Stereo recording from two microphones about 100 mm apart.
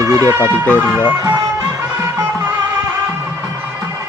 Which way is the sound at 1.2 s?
35° right (ahead or behind).